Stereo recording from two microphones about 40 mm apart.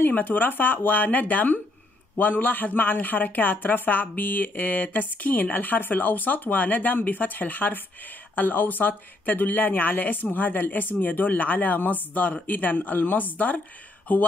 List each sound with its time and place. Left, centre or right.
0.2 s a man's voice: left